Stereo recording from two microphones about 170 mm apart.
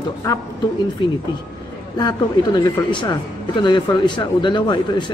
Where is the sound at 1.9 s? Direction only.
25° left (ahead or behind).